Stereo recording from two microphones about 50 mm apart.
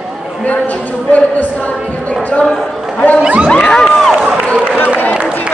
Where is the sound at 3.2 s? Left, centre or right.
Right.